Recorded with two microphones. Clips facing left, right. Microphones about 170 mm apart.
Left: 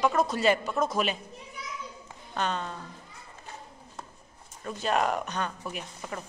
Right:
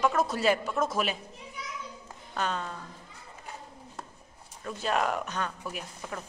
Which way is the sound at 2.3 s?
5° right (ahead or behind).